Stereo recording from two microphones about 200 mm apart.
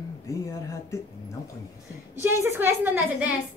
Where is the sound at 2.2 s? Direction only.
10° right (ahead or behind).